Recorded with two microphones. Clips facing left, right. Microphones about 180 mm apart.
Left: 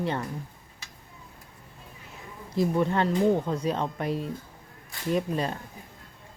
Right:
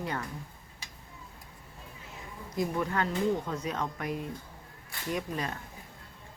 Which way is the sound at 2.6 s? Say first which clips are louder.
Left 6 dB; 30° left (ahead or behind).